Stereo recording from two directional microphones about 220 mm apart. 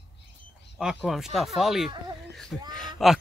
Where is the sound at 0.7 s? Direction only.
Centre (ahead or behind).